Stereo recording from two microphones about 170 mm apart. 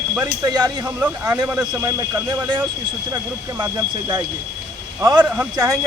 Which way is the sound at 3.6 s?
25° right (ahead or behind).